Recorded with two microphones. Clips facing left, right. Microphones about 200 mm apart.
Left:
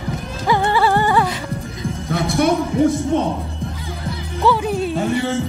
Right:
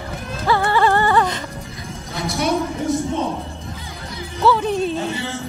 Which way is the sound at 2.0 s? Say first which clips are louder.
Left 5 dB; 55° left (ahead or behind).